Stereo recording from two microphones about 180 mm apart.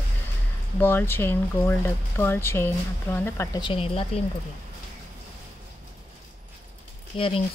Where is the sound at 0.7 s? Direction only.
10° left (ahead or behind).